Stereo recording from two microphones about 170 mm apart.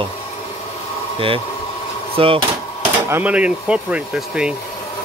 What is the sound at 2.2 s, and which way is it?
Speech, 30° right (ahead or behind).